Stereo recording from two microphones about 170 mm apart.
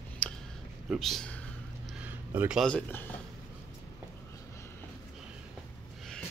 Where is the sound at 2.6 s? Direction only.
10° left (ahead or behind).